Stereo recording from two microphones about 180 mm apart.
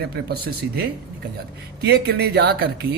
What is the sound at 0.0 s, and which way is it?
A man's voice, 60° right (ahead or behind).